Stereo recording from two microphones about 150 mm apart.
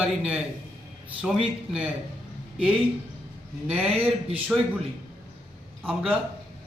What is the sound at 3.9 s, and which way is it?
Speech, 40° right (ahead or behind).